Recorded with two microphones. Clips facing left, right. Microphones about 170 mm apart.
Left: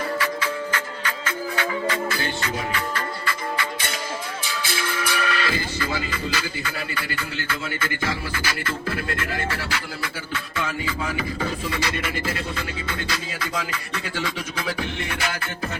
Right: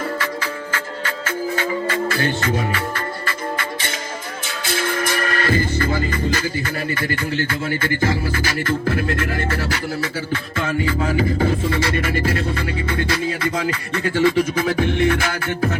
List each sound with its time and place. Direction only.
2.1 s music: 50° right (ahead or behind)
4.7 s music: 50° right (ahead or behind)
11.7 s music: 55° right (ahead or behind)